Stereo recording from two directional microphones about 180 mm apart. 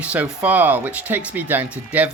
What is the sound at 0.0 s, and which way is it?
Speech, 5° right (ahead or behind).